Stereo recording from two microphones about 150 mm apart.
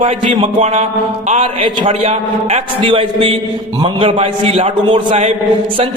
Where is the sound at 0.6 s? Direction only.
45° right (ahead or behind).